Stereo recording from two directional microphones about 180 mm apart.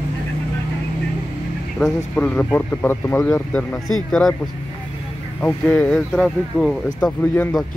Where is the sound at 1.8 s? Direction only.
10° left (ahead or behind).